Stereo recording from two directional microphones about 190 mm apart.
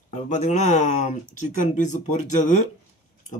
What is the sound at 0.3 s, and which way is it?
Speech, 40° left (ahead or behind).